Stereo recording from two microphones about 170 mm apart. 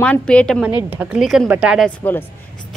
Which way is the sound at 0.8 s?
10° right (ahead or behind).